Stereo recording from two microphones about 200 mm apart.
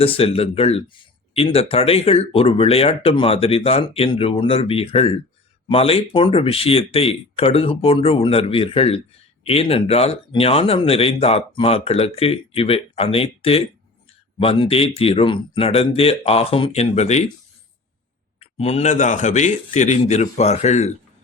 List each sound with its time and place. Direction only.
0.0 s speech: 30° left (ahead or behind)
18.3 s a man's voice: 30° left (ahead or behind)